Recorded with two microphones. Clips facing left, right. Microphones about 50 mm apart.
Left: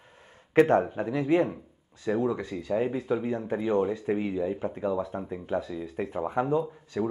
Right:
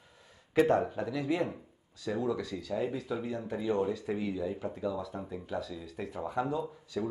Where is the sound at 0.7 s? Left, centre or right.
Left.